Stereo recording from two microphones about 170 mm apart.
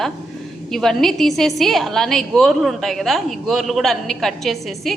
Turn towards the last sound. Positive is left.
turn(degrees=0)  # may be behind; listen again after turning